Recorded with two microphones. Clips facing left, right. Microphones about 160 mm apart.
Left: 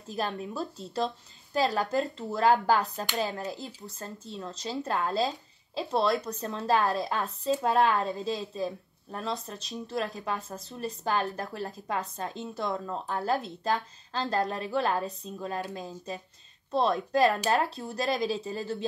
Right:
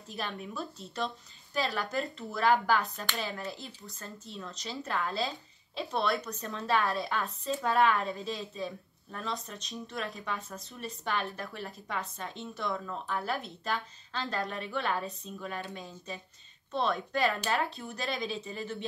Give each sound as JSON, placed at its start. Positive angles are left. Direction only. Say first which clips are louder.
{"t": 0.1, "sound": "speech", "louder": "left 6 dB", "side_deg": 35}